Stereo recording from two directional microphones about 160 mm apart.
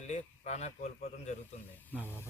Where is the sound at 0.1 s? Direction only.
45° left (ahead or behind).